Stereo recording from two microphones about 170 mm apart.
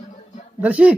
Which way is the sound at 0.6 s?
5° right (ahead or behind).